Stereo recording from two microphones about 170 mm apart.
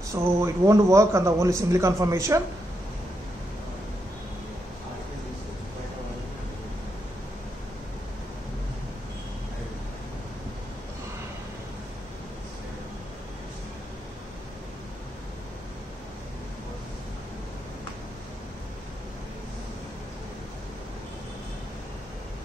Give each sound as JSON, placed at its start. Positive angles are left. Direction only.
{"t": 0.1, "sound": "a man's voice", "side_deg": -15}